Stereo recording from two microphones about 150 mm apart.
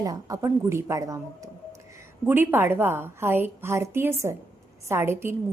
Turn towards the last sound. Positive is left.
turn(degrees=-15)  # may be behind; listen again after turning